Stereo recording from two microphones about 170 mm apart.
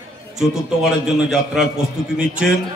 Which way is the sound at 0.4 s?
Centre (ahead or behind).